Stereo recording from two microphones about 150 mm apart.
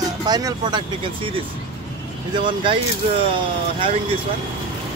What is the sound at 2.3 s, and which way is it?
Speech, 30° right (ahead or behind).